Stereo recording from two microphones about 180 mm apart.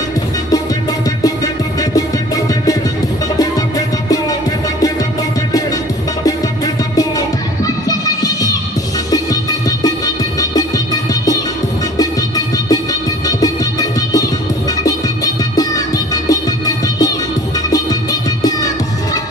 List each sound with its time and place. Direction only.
1.2 s music: 20° left (ahead or behind)
7.0 s music: 20° left (ahead or behind)
12.0 s music: 20° left (ahead or behind)